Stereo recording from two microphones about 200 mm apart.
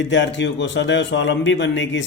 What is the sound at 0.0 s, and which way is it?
Speech, 65° left (ahead or behind).